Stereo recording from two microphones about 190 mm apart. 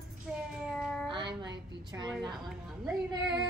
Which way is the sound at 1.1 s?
25° right (ahead or behind).